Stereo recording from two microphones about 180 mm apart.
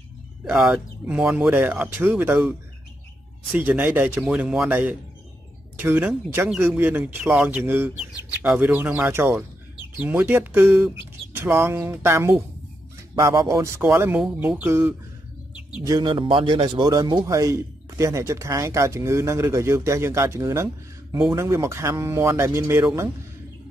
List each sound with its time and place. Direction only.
0.5 s a man's voice: 5° right (ahead or behind)
3.5 s a man's voice: 10° right (ahead or behind)
15.8 s a man's voice: 20° right (ahead or behind)